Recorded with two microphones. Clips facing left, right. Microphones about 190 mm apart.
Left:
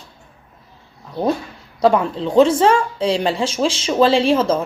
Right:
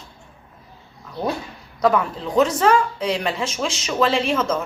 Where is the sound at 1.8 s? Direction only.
30° left (ahead or behind).